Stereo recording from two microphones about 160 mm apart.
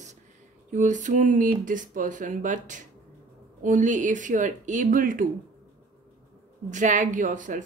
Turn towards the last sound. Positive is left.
turn(degrees=-55)  # may be behind; listen again after turning